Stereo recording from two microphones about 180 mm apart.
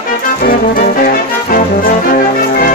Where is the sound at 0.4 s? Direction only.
50° left (ahead or behind).